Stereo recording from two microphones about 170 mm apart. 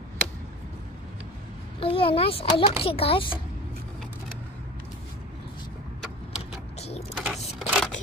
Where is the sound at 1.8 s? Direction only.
30° left (ahead or behind).